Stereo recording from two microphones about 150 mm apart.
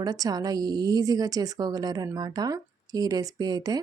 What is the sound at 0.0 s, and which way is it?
A woman's voice, 25° right (ahead or behind).